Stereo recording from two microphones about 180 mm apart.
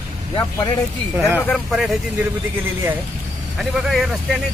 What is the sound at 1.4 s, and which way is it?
Speech, centre (ahead or behind).